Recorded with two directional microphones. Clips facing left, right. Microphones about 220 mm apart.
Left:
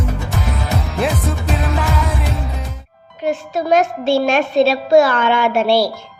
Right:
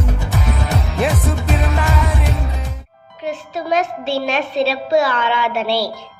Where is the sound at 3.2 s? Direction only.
45° left (ahead or behind).